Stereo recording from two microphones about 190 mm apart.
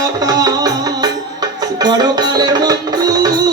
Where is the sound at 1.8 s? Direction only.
20° right (ahead or behind).